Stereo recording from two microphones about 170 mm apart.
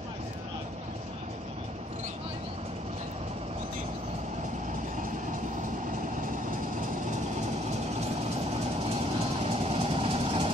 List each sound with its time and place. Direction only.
8.9 s vehicle: 35° right (ahead or behind)